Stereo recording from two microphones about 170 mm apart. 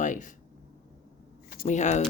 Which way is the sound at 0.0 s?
50° left (ahead or behind).